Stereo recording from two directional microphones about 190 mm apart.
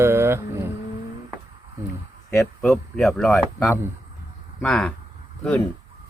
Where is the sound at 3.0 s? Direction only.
Centre (ahead or behind).